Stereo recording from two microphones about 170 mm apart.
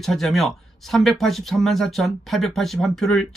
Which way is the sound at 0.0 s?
Centre (ahead or behind).